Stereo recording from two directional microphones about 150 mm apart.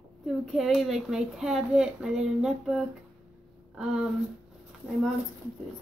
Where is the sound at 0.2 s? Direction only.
Centre (ahead or behind).